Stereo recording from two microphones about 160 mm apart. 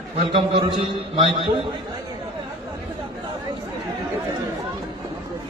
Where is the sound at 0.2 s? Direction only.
35° right (ahead or behind).